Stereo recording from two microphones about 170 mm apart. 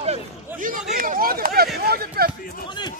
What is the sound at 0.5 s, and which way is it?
Speech, 50° right (ahead or behind).